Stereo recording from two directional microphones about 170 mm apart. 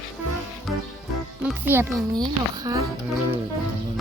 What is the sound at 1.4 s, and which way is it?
A child's voice, 10° right (ahead or behind).